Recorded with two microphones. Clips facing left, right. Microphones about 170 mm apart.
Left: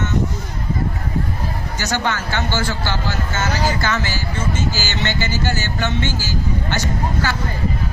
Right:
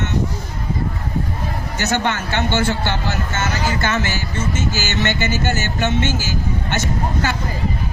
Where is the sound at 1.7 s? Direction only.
20° right (ahead or behind).